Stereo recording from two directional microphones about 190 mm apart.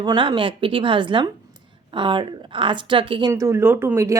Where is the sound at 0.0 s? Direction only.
25° right (ahead or behind).